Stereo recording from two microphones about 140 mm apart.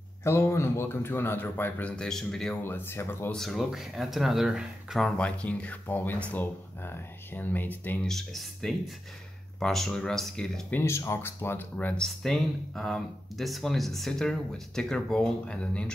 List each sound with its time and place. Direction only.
0.2 s speech: 20° left (ahead or behind)
2.6 s speech: 15° left (ahead or behind)
3.3 s speech: centre (ahead or behind)
10.8 s speech: 20° left (ahead or behind)